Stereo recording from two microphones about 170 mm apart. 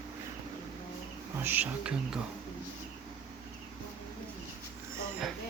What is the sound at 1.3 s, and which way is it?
Speech, 10° right (ahead or behind).